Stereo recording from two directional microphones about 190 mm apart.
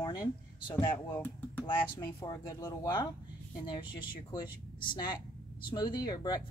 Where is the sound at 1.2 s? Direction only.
10° left (ahead or behind).